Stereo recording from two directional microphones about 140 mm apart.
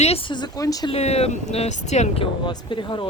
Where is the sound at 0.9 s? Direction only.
50° left (ahead or behind).